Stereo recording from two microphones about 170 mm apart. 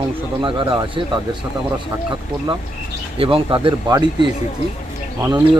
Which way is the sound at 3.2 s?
30° right (ahead or behind).